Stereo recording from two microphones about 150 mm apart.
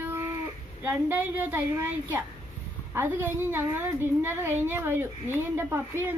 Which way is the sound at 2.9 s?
15° right (ahead or behind).